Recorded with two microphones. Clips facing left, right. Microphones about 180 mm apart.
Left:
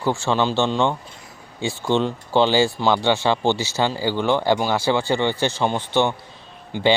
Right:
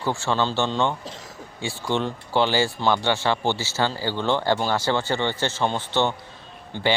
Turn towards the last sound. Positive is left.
turn(degrees=10)  # may be behind; listen again after turning